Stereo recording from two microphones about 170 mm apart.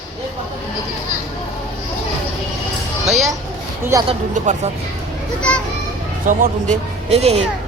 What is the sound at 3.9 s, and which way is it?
Speech, 15° right (ahead or behind).